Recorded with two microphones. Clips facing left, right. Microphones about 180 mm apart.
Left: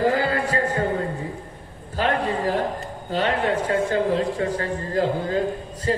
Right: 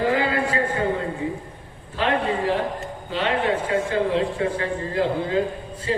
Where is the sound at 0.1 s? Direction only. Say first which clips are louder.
Even; 40° left (ahead or behind).